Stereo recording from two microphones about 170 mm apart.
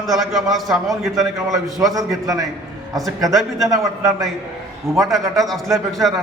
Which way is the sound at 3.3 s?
Centre (ahead or behind).